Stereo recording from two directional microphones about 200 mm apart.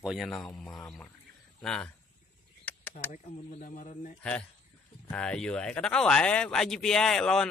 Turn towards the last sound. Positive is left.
turn(degrees=5)  # may be behind; listen again after turning